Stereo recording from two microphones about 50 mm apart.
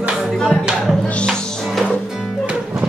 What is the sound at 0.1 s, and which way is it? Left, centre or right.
Music, centre.